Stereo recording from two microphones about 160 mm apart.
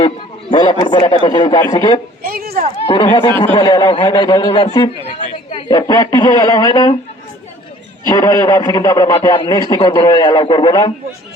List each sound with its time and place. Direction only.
0.5 s a man's voice: 30° left (ahead or behind)
2.2 s speech: 70° right (ahead or behind)
2.8 s a man's voice: 35° left (ahead or behind)
8.0 s a man's voice: 20° left (ahead or behind)